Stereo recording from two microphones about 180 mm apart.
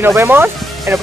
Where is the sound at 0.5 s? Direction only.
Centre (ahead or behind).